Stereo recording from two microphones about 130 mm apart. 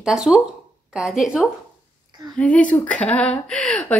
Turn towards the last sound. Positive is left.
turn(degrees=5)  # may be behind; listen again after turning